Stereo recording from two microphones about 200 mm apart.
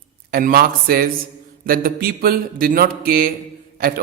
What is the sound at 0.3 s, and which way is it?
A man's voice, 45° right (ahead or behind).